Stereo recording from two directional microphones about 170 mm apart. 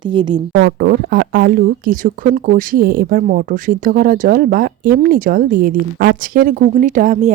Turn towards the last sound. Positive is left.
turn(degrees=-50)  # may be behind; listen again after turning